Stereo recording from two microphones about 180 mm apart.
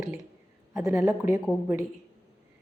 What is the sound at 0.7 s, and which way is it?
Speech, 15° right (ahead or behind).